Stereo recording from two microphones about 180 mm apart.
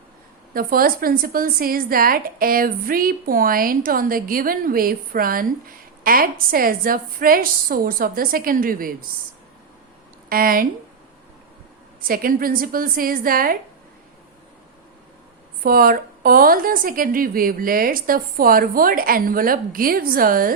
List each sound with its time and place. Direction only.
0.5 s a woman's voice: 55° right (ahead or behind)
10.2 s a woman's voice: 55° right (ahead or behind)
12.0 s a woman's voice: 50° right (ahead or behind)
15.6 s a woman's voice: 55° right (ahead or behind)